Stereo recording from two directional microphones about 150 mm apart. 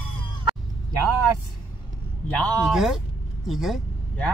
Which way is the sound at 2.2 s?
10° left (ahead or behind).